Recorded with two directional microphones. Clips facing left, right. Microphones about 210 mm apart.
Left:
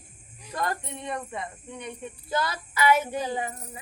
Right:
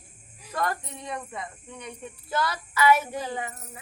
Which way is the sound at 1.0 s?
Centre (ahead or behind).